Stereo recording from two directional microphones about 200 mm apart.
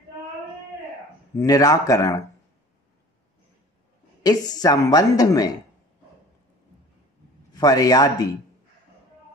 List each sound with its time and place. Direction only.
1.4 s speech: 15° left (ahead or behind)
4.2 s a woman's voice: 20° left (ahead or behind)
7.5 s a woman's voice: 20° left (ahead or behind)